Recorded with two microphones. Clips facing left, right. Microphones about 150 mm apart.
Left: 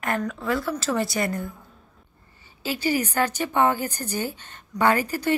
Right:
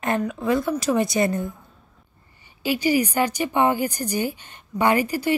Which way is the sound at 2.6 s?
15° right (ahead or behind).